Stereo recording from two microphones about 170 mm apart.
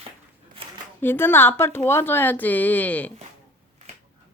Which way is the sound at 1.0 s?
10° left (ahead or behind).